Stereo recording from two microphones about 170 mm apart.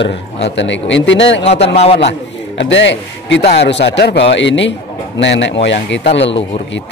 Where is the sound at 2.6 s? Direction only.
90° left.